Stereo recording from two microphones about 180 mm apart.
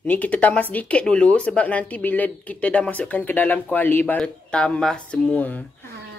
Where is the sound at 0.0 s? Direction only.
10° left (ahead or behind).